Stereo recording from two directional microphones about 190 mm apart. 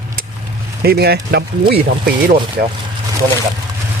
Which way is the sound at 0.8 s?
60° right (ahead or behind).